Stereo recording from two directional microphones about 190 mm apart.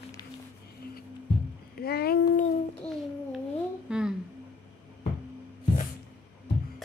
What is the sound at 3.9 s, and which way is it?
Speech, 5° right (ahead or behind).